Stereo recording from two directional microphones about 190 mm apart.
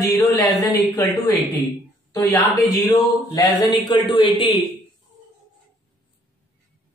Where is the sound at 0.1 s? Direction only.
20° left (ahead or behind).